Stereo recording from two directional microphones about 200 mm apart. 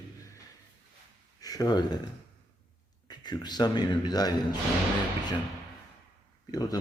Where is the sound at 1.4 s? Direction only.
20° left (ahead or behind).